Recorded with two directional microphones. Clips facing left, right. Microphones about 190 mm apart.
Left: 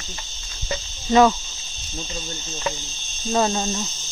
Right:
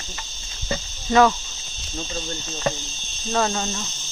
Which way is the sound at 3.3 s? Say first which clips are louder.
Left 2 dB; 20° left (ahead or behind).